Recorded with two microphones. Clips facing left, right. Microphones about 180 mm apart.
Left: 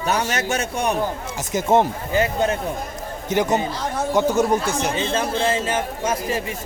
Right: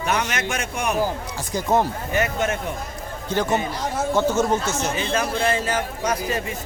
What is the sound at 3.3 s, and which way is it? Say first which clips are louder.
Speech: left 2 dB; 20° left (ahead or behind).